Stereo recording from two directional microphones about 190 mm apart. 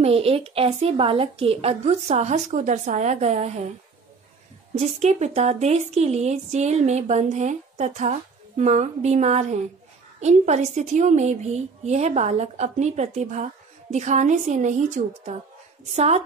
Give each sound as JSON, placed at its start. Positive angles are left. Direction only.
{"t": 0.0, "sound": "a woman's voice", "side_deg": -30}
{"t": 4.7, "sound": "a woman's voice", "side_deg": -35}